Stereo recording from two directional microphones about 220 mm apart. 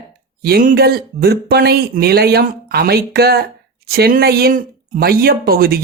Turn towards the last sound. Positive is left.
turn(degrees=-45)  # may be behind; listen again after turning